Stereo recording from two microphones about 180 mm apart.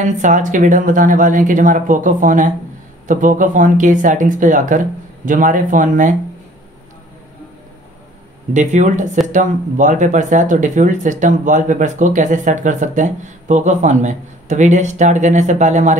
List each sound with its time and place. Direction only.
0.0 s speech: 45° right (ahead or behind)
8.5 s speech: 40° right (ahead or behind)